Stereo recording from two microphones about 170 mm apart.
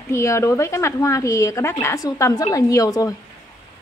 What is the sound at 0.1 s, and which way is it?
Speech, 15° left (ahead or behind).